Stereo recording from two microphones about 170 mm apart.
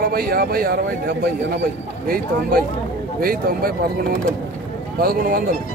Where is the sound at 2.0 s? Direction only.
60° right (ahead or behind).